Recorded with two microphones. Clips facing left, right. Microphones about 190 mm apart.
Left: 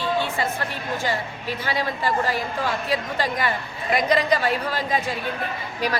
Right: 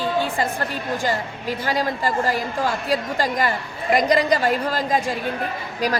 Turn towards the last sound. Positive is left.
turn(degrees=-40)  # may be behind; listen again after turning